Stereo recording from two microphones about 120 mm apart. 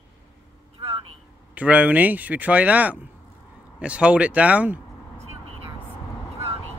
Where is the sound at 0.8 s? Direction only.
50° right (ahead or behind).